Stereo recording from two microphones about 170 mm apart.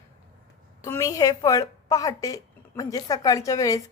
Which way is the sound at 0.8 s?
20° left (ahead or behind).